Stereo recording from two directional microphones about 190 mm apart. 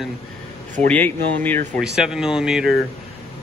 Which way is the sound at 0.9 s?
10° left (ahead or behind).